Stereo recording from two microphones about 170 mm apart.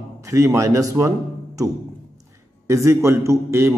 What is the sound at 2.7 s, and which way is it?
A man's voice, 15° right (ahead or behind).